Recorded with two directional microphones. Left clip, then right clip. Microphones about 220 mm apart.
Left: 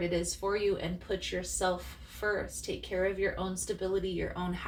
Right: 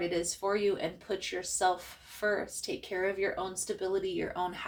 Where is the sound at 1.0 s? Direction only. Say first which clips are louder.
Even; 45° right (ahead or behind).